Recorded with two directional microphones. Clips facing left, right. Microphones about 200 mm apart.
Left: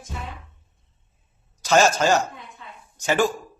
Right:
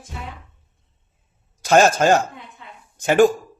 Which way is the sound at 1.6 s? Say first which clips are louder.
Right 3 dB; 55° right (ahead or behind).